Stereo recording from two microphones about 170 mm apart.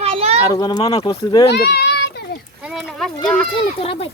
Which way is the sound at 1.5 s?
75° left (ahead or behind).